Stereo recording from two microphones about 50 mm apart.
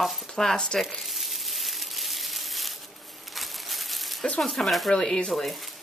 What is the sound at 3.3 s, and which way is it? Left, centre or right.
Crumpling, centre.